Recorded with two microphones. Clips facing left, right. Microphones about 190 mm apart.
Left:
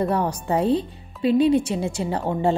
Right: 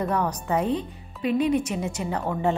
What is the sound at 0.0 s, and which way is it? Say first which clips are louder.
Speech: left 3 dB; 30° left (ahead or behind).